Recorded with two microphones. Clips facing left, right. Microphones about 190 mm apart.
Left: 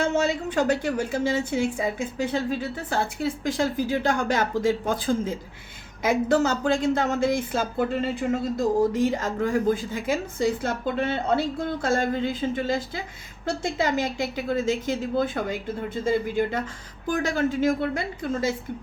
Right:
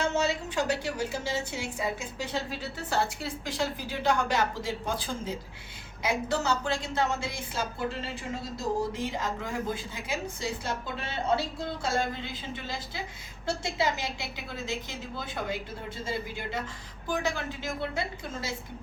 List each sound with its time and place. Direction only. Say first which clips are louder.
0.1 s speech: left 5 dB; 50° left (ahead or behind)